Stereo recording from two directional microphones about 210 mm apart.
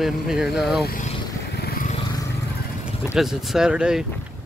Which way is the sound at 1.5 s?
50° left (ahead or behind).